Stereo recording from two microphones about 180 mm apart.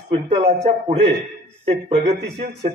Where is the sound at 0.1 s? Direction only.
35° right (ahead or behind).